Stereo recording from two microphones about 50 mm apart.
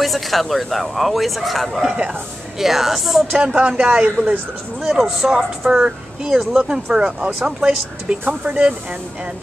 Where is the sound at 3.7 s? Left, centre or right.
Right.